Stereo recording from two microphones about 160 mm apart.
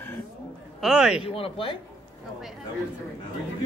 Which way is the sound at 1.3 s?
35° left (ahead or behind).